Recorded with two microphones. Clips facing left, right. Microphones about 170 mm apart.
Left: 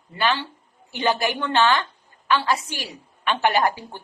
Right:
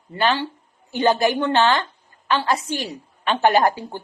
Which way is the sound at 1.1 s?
15° right (ahead or behind).